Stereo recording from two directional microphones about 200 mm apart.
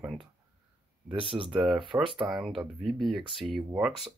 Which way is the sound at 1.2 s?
25° right (ahead or behind).